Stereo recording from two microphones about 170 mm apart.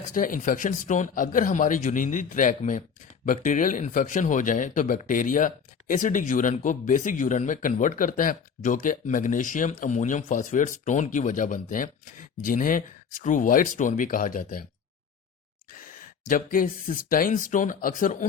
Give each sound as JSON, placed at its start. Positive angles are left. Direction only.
{"t": 0.1, "sound": "speech", "side_deg": 55}
{"t": 16.3, "sound": "speech", "side_deg": 55}